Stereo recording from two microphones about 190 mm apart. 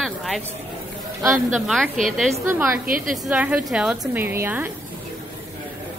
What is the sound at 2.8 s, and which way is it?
Speech, 50° right (ahead or behind).